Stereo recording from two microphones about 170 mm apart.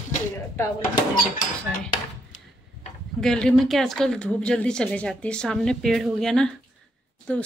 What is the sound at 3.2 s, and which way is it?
A woman's voice, 5° left (ahead or behind).